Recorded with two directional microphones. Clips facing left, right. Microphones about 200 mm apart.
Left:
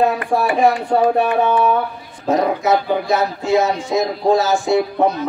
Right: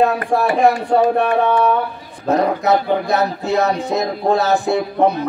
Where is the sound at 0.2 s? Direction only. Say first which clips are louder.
Right 1 dB; 40° right (ahead or behind).